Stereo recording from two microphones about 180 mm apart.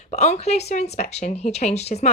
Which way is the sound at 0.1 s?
40° left (ahead or behind).